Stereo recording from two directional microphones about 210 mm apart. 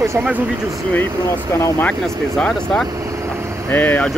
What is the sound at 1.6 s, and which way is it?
Speech, 5° left (ahead or behind).